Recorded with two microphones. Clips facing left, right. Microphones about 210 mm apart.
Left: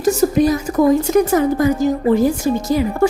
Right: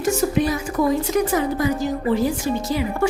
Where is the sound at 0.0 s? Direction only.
40° left (ahead or behind).